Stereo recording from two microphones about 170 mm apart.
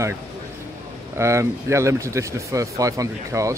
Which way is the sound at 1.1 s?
15° right (ahead or behind).